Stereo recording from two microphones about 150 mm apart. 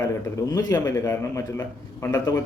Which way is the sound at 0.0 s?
25° left (ahead or behind).